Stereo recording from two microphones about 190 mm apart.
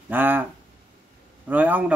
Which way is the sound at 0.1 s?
10° right (ahead or behind).